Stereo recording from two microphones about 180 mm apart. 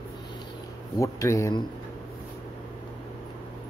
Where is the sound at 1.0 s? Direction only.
15° left (ahead or behind).